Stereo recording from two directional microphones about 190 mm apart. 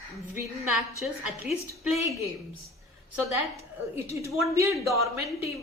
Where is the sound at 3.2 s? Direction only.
15° right (ahead or behind).